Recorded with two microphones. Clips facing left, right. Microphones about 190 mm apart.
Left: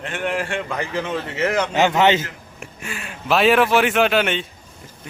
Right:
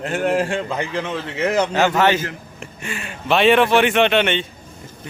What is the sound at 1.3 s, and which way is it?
Speech, 10° right (ahead or behind).